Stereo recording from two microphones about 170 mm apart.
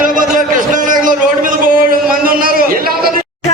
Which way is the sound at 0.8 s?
55° right (ahead or behind).